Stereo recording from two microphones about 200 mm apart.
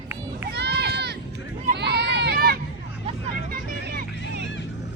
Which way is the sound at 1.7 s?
55° right (ahead or behind).